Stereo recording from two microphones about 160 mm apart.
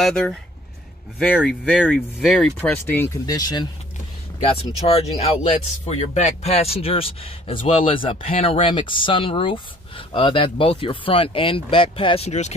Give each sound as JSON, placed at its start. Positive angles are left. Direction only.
{"t": 0.0, "sound": "speech", "side_deg": 5}
{"t": 1.4, "sound": "speech", "side_deg": 0}
{"t": 2.6, "sound": "speech", "side_deg": 10}
{"t": 4.5, "sound": "speech", "side_deg": 35}